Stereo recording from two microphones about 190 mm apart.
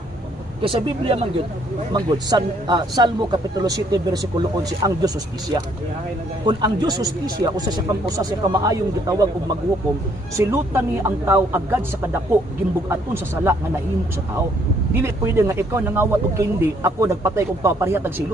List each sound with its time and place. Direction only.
0.6 s a man's voice: 25° right (ahead or behind)
10.3 s speech: 15° right (ahead or behind)
15.0 s speech: 15° right (ahead or behind)